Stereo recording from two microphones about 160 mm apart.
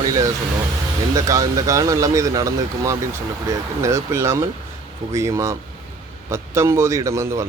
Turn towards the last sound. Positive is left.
turn(degrees=-20)  # may be behind; listen again after turning